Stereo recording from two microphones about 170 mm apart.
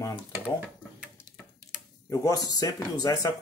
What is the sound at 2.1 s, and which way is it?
Speech, 20° left (ahead or behind).